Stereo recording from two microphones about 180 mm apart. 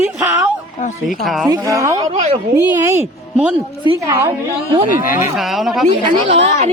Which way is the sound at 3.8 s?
20° right (ahead or behind).